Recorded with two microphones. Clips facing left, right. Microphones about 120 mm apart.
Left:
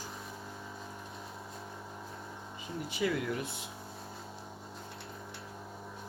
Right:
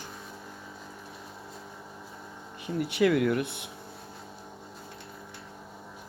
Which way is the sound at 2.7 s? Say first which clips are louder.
Right 9 dB; 70° right (ahead or behind).